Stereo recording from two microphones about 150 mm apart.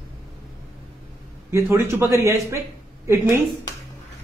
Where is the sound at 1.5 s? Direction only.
15° right (ahead or behind).